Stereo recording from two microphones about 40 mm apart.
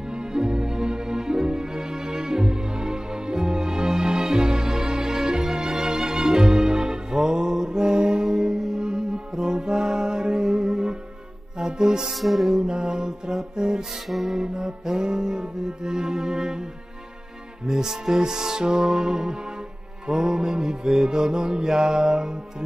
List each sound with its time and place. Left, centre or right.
0.1 s music: centre
12.1 s music: centre
12.4 s music: centre
14.0 s music: centre
14.3 s music: centre
17.6 s mantra: centre